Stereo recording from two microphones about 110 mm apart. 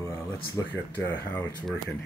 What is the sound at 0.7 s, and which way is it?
Speech, 15° left (ahead or behind).